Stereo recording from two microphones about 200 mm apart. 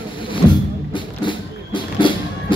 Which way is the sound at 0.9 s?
25° left (ahead or behind).